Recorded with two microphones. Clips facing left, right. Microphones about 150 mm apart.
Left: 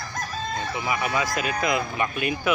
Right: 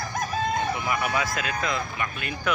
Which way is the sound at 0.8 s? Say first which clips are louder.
Left 1 dB; centre (ahead or behind).